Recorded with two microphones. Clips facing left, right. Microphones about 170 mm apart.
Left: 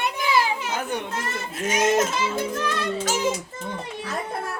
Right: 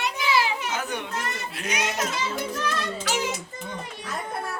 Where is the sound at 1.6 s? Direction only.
45° left (ahead or behind).